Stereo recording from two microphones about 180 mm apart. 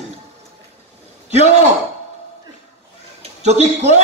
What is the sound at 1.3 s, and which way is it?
Speech, 40° right (ahead or behind).